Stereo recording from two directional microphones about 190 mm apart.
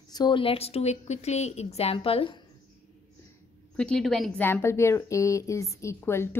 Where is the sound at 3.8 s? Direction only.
5° left (ahead or behind).